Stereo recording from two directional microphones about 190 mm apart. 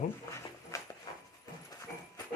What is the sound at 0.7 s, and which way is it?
Dog, 15° left (ahead or behind).